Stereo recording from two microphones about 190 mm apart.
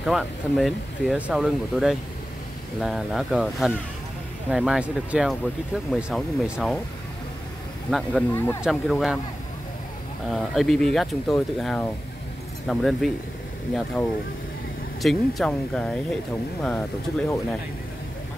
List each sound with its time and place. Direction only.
0.0 s speech: centre (ahead or behind)
7.9 s speech: centre (ahead or behind)
8.4 s speech: 15° left (ahead or behind)
8.6 s speech: centre (ahead or behind)
10.3 s speech: centre (ahead or behind)
15.0 s speech: centre (ahead or behind)